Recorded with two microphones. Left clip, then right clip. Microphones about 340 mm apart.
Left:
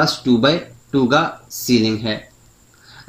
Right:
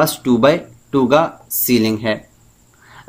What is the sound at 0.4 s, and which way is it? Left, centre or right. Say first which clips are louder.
Speech: right 3 dB; right.